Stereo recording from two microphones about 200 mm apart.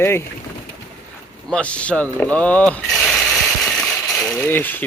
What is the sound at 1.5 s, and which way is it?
Speech, 5° left (ahead or behind).